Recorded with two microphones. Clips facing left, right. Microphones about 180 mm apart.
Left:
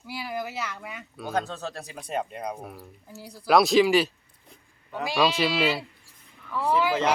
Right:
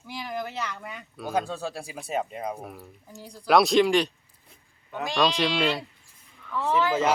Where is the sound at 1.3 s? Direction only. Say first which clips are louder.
Right 1 dB; 10° right (ahead or behind); by 6.9 s 10° left (ahead or behind).